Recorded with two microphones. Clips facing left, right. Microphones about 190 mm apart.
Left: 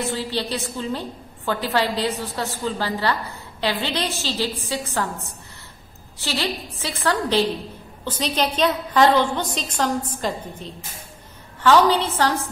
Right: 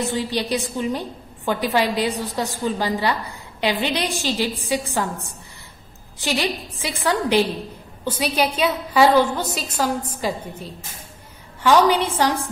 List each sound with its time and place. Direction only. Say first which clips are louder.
0.1 s a woman's voice: right 3 dB; 15° right (ahead or behind)